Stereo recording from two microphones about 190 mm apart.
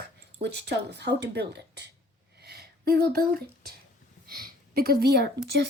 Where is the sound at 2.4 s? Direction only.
55° right (ahead or behind).